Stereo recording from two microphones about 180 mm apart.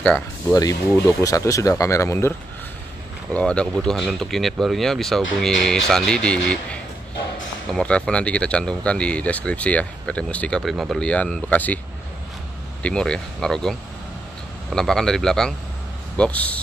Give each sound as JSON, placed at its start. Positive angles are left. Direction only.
{"t": 0.5, "sound": "speech", "side_deg": 20}
{"t": 3.3, "sound": "speech", "side_deg": 5}
{"t": 12.8, "sound": "speech", "side_deg": 5}